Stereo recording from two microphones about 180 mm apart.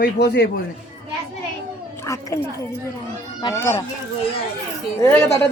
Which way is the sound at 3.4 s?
20° left (ahead or behind).